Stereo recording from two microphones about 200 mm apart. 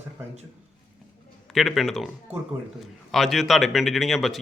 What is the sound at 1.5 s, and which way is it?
A man's voice, centre (ahead or behind).